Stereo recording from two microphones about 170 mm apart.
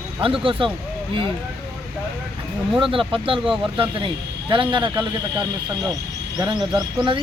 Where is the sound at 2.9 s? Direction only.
30° right (ahead or behind).